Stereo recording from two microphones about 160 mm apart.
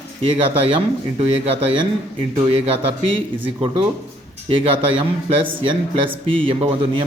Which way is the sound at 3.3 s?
30° right (ahead or behind).